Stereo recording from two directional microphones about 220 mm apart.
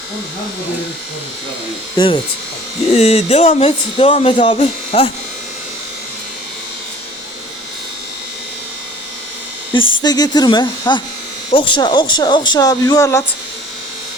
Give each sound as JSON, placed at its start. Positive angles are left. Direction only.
{"t": 2.0, "sound": "speech", "side_deg": 25}
{"t": 10.0, "sound": "speech", "side_deg": 20}